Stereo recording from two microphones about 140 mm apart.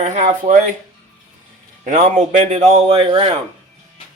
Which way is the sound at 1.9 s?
55° right (ahead or behind).